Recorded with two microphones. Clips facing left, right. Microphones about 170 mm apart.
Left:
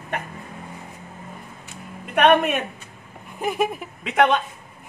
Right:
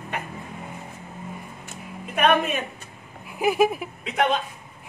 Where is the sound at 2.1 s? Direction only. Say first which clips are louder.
Left 4 dB; 65° left (ahead or behind).